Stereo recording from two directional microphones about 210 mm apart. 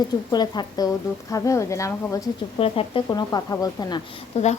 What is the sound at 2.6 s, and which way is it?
A woman's voice, 25° left (ahead or behind).